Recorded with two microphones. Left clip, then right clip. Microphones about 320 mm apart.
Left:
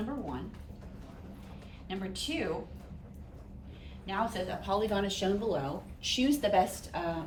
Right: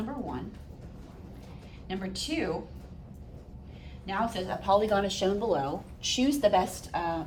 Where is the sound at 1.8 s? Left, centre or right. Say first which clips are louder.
Right 2 dB; centre.